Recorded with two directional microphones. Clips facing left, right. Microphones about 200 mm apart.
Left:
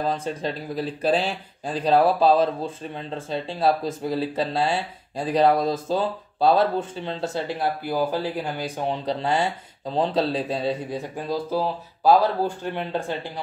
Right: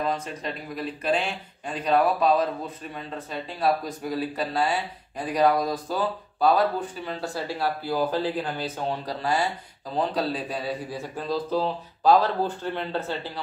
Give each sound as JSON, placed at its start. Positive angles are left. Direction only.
{"t": 0.0, "sound": "speech", "side_deg": 30}